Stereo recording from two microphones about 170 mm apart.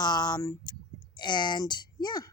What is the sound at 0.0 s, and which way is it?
Speech, 25° left (ahead or behind).